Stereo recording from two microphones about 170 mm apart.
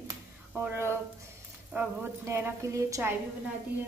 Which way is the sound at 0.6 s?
15° right (ahead or behind).